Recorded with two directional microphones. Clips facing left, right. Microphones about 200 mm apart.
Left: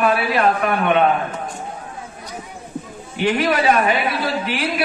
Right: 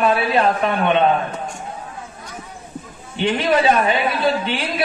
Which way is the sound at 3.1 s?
30° right (ahead or behind).